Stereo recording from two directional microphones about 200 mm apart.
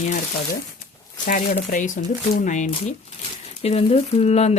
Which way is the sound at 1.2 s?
40° left (ahead or behind).